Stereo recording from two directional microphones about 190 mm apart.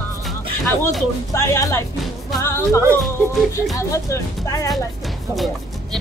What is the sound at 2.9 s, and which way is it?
Speech, centre (ahead or behind).